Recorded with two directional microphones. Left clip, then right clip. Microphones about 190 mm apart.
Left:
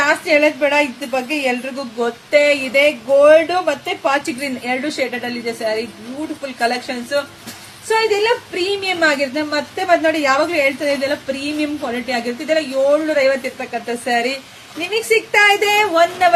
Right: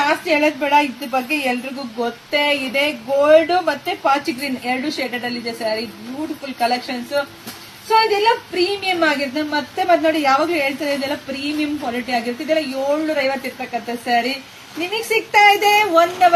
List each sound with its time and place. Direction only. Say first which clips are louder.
0.0 s a woman's voice: left 3 dB; 20° left (ahead or behind)